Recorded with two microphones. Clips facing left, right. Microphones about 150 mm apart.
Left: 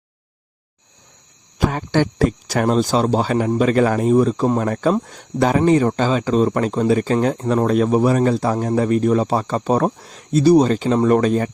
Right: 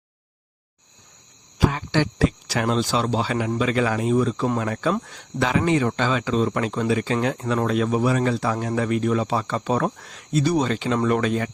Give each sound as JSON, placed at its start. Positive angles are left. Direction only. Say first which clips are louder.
{"t": 1.5, "sound": "speech", "louder": "left 3 dB", "side_deg": 50}